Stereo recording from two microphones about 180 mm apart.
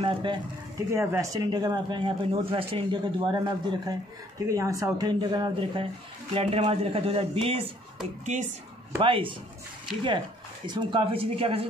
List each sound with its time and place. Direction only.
0.0 s speech: 25° right (ahead or behind)
9.0 s speech: 30° right (ahead or behind)